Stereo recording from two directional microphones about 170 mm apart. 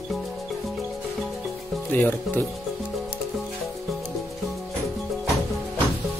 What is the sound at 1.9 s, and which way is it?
Speech, 10° left (ahead or behind).